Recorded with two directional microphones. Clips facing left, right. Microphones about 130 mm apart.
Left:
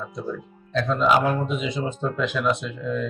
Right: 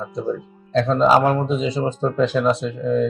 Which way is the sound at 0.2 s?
30° right (ahead or behind).